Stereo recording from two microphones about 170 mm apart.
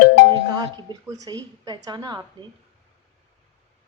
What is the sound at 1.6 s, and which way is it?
Speech, 25° right (ahead or behind).